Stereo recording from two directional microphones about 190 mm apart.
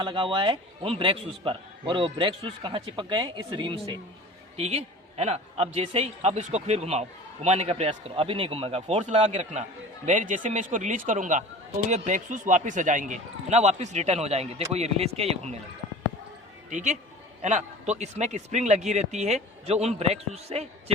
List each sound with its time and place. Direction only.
0.0 s a man's voice: 25° right (ahead or behind)
16.6 s a man's voice: 40° right (ahead or behind)